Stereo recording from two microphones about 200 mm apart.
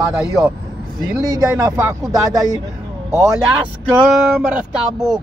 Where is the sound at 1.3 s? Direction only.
15° right (ahead or behind).